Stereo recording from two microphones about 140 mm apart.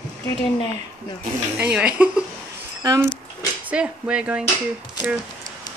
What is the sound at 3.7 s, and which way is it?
Speech, 10° right (ahead or behind).